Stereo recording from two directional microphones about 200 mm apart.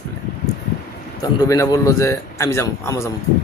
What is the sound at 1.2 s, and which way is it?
A man's voice, 15° left (ahead or behind).